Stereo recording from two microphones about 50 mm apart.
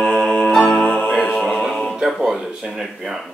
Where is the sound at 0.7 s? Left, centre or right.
Left.